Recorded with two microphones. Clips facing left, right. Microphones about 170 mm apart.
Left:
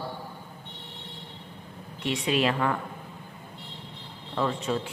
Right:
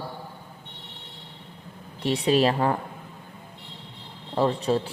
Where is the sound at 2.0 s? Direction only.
35° right (ahead or behind).